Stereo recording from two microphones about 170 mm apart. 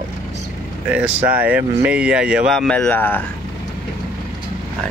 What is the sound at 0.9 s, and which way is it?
Speech, 10° right (ahead or behind).